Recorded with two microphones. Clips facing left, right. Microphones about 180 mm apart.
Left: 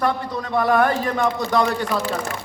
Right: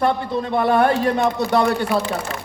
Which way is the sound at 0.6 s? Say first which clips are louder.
Right 1 dB; 25° right (ahead or behind).